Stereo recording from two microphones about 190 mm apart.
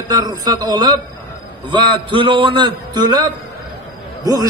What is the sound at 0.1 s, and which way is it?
A man's voice, 20° right (ahead or behind).